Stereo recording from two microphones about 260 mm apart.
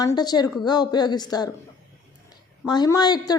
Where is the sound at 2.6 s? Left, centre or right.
Centre.